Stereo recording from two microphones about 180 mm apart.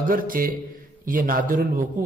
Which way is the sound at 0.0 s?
50° right (ahead or behind).